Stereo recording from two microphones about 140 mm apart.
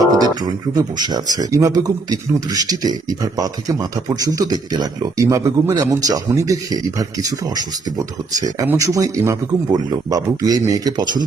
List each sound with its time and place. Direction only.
0.2 s speech: 30° right (ahead or behind)